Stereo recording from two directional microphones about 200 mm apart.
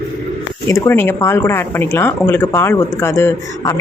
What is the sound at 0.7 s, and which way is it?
Speech, 10° left (ahead or behind).